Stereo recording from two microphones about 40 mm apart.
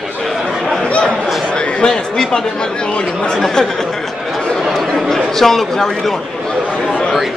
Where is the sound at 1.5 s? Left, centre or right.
Centre.